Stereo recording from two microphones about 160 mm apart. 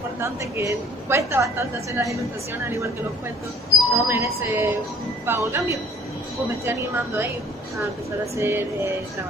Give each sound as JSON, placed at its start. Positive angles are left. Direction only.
{"t": 0.2, "sound": "a woman's voice", "side_deg": -20}
{"t": 3.9, "sound": "a woman's voice", "side_deg": -15}
{"t": 8.4, "sound": "a woman's voice", "side_deg": -15}